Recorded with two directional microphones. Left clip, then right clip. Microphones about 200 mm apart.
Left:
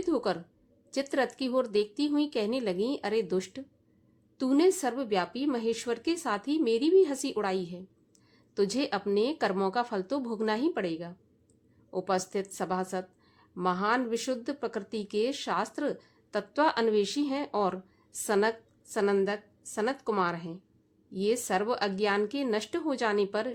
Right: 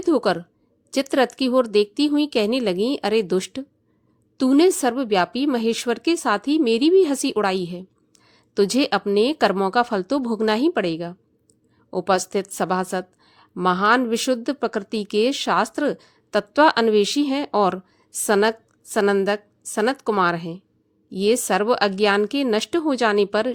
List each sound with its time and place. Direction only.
0.0 s a woman's voice: 40° right (ahead or behind)